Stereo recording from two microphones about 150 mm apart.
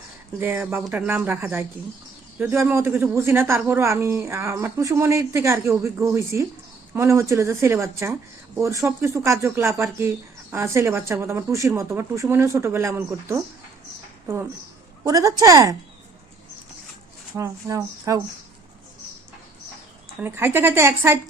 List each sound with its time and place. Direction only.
0.3 s speech: 15° right (ahead or behind)
15.0 s speech: 25° right (ahead or behind)
17.3 s speech: 20° right (ahead or behind)
20.2 s speech: 15° right (ahead or behind)